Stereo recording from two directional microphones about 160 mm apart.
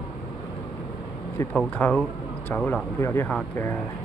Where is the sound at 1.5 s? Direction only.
5° left (ahead or behind).